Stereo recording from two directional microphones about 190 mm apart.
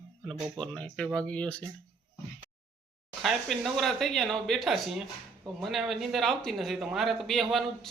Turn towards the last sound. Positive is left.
turn(degrees=0)  # may be behind; listen again after turning